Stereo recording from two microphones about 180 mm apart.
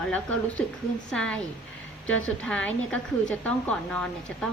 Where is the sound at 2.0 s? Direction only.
90° left.